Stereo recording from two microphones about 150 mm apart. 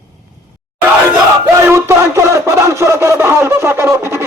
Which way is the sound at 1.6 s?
20° right (ahead or behind).